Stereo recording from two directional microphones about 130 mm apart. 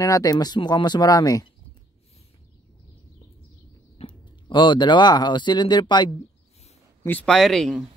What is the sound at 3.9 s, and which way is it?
Speech, 40° left (ahead or behind).